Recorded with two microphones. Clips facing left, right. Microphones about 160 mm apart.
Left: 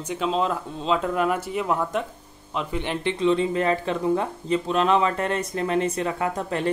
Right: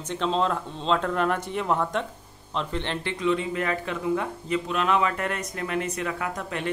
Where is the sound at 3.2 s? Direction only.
30° left (ahead or behind).